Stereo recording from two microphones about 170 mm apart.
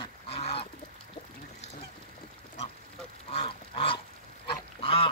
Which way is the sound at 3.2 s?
35° left (ahead or behind).